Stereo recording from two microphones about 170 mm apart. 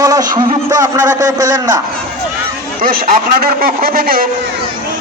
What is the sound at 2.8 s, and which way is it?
A man's voice, 60° right (ahead or behind).